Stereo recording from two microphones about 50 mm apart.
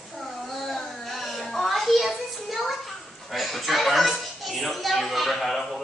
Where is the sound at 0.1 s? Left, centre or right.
Centre.